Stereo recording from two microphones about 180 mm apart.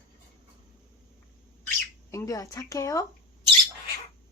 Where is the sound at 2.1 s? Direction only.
20° left (ahead or behind).